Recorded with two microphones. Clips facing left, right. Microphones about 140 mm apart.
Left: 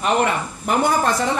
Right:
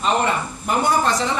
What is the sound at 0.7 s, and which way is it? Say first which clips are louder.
Speech: left 1 dB; 55° left (ahead or behind).